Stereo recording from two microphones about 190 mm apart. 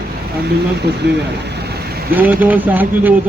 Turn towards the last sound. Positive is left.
turn(degrees=-10)  # may be behind; listen again after turning